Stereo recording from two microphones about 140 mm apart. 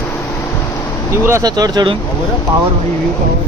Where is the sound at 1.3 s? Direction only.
25° right (ahead or behind).